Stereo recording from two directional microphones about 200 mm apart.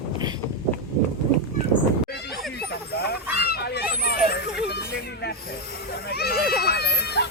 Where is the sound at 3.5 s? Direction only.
50° left (ahead or behind).